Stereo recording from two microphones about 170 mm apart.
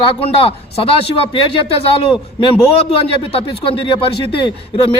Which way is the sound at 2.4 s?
30° left (ahead or behind).